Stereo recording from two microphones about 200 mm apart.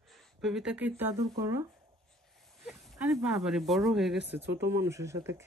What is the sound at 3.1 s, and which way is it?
Speech, 15° right (ahead or behind).